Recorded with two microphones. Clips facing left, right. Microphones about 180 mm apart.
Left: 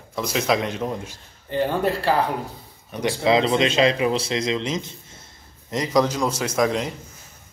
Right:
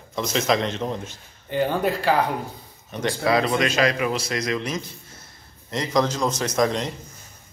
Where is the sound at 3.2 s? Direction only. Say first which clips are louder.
Left 3 dB; 25° left (ahead or behind); by 6.9 s 5° left (ahead or behind).